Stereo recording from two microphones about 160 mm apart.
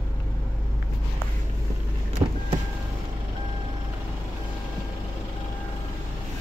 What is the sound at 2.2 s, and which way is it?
Vehicle, 15° right (ahead or behind).